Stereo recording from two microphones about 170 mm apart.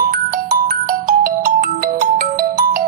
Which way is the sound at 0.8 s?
55° right (ahead or behind).